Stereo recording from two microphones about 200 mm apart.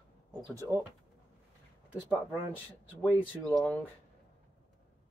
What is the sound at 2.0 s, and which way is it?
Speech, 10° left (ahead or behind).